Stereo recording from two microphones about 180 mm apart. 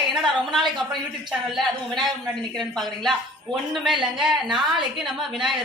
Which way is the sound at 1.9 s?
Centre (ahead or behind).